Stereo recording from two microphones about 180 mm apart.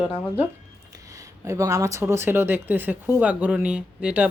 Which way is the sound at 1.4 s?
15° right (ahead or behind).